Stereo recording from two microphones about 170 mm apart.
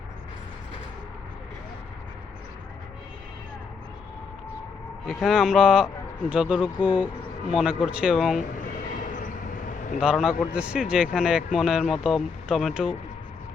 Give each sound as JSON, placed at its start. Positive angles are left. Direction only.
{"t": 5.0, "sound": "speech", "side_deg": 0}
{"t": 9.0, "sound": "a sound", "side_deg": 50}
{"t": 10.0, "sound": "speech", "side_deg": -5}